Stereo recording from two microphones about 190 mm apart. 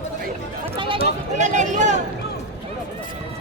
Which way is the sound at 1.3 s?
40° right (ahead or behind).